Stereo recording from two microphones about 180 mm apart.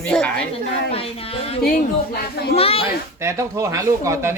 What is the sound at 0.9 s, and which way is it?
A woman's voice, 35° left (ahead or behind).